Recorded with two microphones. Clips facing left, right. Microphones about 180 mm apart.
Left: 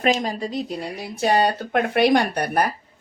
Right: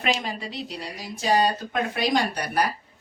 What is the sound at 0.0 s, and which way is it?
Speech, 40° left (ahead or behind).